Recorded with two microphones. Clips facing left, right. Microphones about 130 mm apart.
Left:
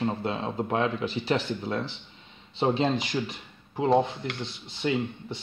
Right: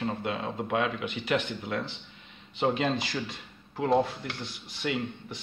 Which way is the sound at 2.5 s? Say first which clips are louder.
Left 2 dB; 25° left (ahead or behind).